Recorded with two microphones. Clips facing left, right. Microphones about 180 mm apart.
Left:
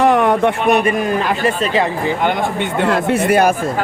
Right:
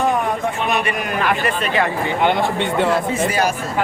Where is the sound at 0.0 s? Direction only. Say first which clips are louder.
Left 7 dB; 75° left (ahead or behind).